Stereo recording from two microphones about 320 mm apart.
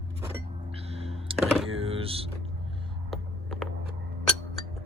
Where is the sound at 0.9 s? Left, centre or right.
Centre.